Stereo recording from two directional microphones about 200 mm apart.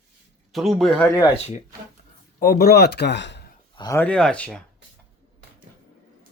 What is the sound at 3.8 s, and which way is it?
Speech, 15° left (ahead or behind).